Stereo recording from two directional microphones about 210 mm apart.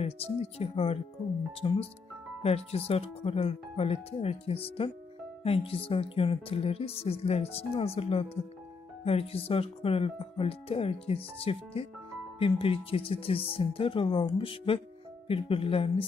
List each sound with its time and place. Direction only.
0.0 s speech: 30° left (ahead or behind)